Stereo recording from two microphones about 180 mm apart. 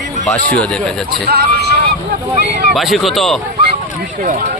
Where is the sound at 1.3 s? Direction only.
60° right (ahead or behind).